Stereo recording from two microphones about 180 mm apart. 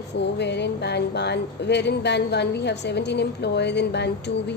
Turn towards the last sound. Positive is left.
turn(degrees=70)  # may be behind; listen again after turning